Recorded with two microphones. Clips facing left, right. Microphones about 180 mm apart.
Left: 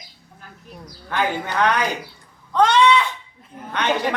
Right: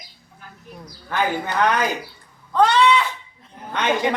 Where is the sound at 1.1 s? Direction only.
10° right (ahead or behind).